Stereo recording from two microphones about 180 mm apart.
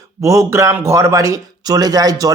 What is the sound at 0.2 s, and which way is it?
Speech, 15° right (ahead or behind).